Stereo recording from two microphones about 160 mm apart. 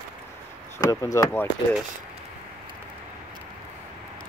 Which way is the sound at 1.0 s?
20° left (ahead or behind).